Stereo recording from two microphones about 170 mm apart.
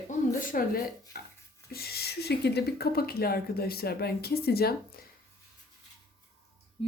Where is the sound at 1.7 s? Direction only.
65° left (ahead or behind).